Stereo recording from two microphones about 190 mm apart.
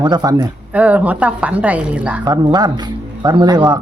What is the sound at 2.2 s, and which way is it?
Speech, 20° right (ahead or behind).